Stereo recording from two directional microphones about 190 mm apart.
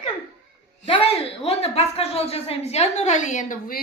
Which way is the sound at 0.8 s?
30° left (ahead or behind).